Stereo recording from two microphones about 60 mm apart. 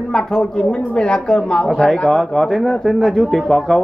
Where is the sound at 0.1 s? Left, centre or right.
Centre.